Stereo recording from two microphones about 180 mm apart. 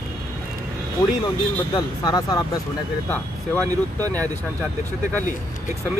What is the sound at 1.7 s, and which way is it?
Speech, 20° left (ahead or behind).